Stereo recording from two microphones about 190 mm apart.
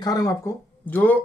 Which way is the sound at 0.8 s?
10° left (ahead or behind).